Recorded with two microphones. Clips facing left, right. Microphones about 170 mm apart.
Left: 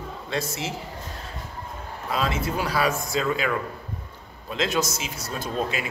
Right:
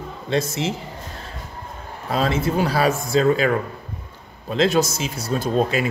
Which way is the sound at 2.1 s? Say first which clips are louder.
Right 5 dB; 30° right (ahead or behind).